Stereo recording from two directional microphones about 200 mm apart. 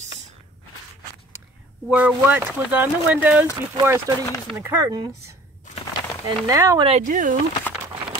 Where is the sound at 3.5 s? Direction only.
20° right (ahead or behind).